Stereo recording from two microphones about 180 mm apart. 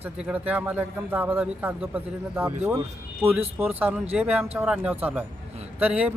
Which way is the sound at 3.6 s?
10° right (ahead or behind).